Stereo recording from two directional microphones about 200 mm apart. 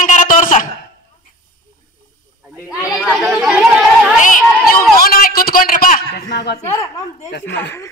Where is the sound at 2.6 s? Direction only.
5° right (ahead or behind).